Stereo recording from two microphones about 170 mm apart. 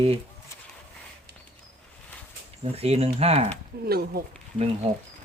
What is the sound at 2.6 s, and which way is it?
Speech, 35° right (ahead or behind).